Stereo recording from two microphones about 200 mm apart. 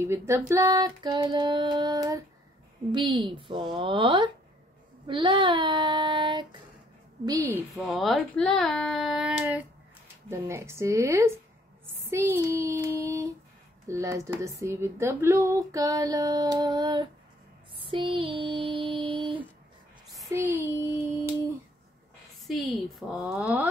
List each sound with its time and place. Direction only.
0.0 s child singing: 15° right (ahead or behind)
7.2 s speech: 15° right (ahead or behind)
7.7 s speech: centre (ahead or behind)
10.3 s speech: 15° right (ahead or behind)
15.7 s child singing: 15° right (ahead or behind)
20.2 s speech: 10° right (ahead or behind)
22.5 s speech: centre (ahead or behind)